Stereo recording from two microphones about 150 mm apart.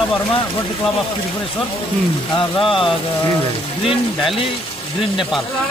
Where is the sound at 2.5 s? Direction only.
35° left (ahead or behind).